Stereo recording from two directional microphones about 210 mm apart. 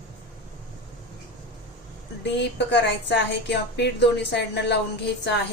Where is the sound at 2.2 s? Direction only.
55° left (ahead or behind).